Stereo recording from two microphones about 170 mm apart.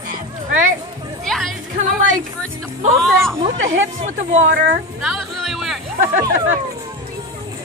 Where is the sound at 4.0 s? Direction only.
45° right (ahead or behind).